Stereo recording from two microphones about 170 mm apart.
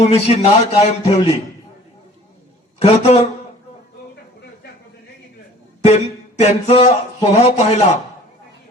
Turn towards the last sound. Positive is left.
turn(degrees=40)  # may be behind; listen again after turning